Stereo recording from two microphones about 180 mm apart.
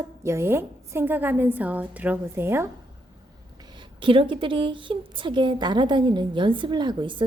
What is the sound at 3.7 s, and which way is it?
A woman's voice, 30° right (ahead or behind).